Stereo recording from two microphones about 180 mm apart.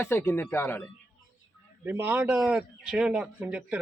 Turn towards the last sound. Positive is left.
turn(degrees=-5)  # may be behind; listen again after turning